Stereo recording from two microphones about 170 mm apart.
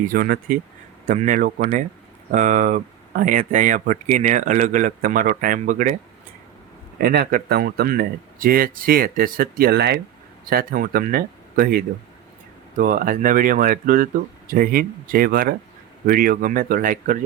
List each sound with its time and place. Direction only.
0.1 s speech: 55° right (ahead or behind)
7.0 s speech: 65° right (ahead or behind)
10.5 s speech: 55° right (ahead or behind)